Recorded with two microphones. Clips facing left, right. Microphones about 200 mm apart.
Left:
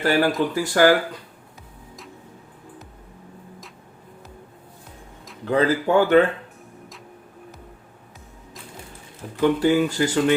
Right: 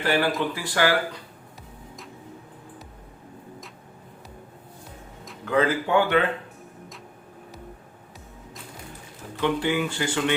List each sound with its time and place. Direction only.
0.0 s speech: 40° left (ahead or behind)
5.5 s speech: 35° left (ahead or behind)
9.4 s speech: 40° left (ahead or behind)